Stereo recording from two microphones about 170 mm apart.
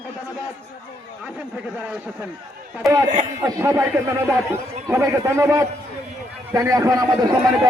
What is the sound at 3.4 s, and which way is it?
A man's voice, 15° right (ahead or behind).